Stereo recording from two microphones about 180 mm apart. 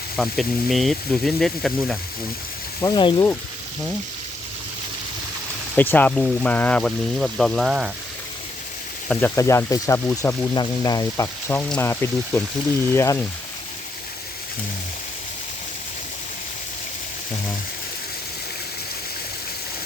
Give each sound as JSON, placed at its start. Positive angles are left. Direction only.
{"t": 0.2, "sound": "speech", "side_deg": 0}
{"t": 2.8, "sound": "speech", "side_deg": 25}
{"t": 5.7, "sound": "speech", "side_deg": 10}
{"t": 9.0, "sound": "speech", "side_deg": 10}